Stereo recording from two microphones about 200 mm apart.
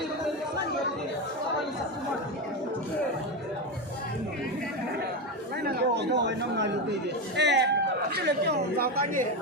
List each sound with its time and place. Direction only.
5.6 s a woman's voice: 60° right (ahead or behind)